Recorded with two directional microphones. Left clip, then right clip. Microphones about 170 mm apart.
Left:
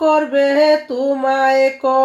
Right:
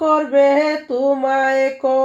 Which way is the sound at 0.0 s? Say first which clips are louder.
Even; 35° right (ahead or behind).